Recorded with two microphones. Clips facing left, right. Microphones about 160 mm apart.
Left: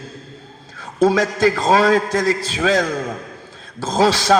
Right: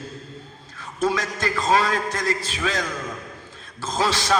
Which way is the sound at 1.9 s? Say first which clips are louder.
Left 8 dB; 35° left (ahead or behind).